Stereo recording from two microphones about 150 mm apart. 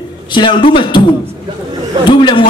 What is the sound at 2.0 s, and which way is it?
Speech, 35° left (ahead or behind).